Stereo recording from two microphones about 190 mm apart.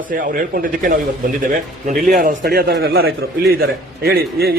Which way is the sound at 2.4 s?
55° right (ahead or behind).